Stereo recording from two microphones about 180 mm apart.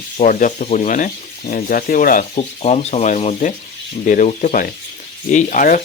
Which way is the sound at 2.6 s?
35° left (ahead or behind).